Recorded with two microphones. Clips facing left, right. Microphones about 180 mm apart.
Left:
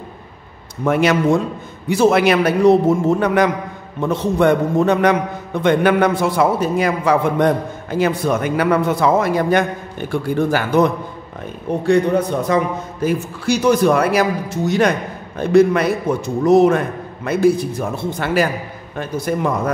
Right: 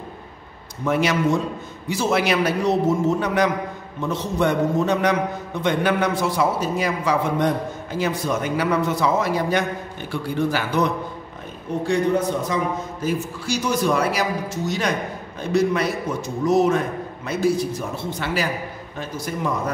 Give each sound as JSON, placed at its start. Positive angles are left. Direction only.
{"t": 0.8, "sound": "a man's voice", "side_deg": 55}
{"t": 11.8, "sound": "a man's voice", "side_deg": 60}
{"t": 15.3, "sound": "a man's voice", "side_deg": 55}